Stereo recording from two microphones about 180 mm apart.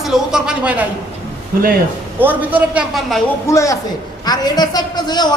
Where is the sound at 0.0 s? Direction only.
5° right (ahead or behind).